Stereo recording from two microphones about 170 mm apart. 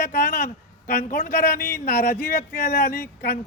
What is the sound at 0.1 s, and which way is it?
A man's voice, 60° left (ahead or behind).